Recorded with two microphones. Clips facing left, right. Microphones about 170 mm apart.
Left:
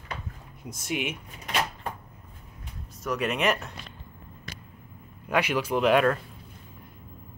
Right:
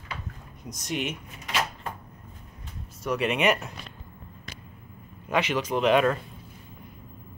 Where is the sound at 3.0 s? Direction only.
Centre (ahead or behind).